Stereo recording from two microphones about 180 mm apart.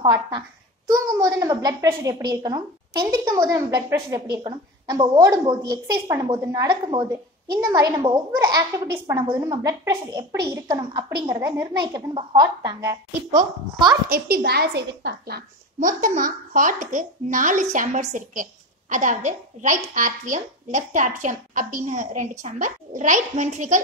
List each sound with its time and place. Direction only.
0.0 s a woman's voice: 25° right (ahead or behind)
14.0 s a woman's voice: 55° right (ahead or behind)